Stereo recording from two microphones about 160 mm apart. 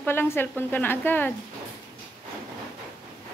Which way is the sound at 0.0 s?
15° left (ahead or behind).